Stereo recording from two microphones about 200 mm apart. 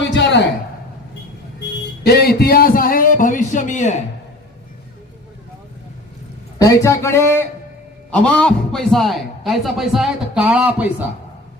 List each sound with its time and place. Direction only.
0.0 s a sound: 65° left (ahead or behind)
2.1 s a man's voice: 50° left (ahead or behind)
6.6 s a man's voice: 15° left (ahead or behind); by 10.9 s 5° right (ahead or behind)